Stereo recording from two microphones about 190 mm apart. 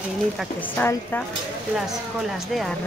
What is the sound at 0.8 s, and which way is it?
Speech, 10° left (ahead or behind).